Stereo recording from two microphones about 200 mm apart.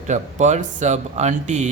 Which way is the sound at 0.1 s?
35° right (ahead or behind).